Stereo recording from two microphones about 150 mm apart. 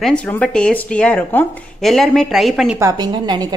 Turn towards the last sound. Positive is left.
turn(degrees=-30)  # may be behind; listen again after turning